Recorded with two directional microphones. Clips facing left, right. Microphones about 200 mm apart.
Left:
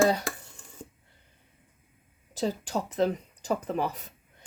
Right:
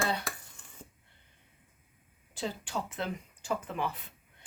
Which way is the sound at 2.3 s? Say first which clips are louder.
Left 7 dB; 40° left (ahead or behind).